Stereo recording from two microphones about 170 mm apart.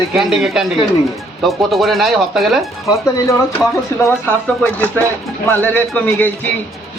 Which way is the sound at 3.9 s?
15° left (ahead or behind).